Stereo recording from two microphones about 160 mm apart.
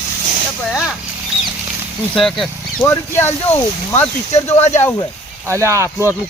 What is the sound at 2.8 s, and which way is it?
Speech, 15° left (ahead or behind).